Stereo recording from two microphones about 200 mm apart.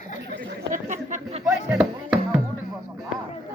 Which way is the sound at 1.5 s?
5° right (ahead or behind).